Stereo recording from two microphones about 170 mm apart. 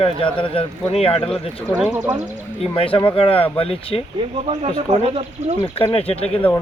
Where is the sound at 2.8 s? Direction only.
30° left (ahead or behind).